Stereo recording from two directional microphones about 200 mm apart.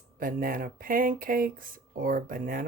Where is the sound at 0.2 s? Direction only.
45° right (ahead or behind).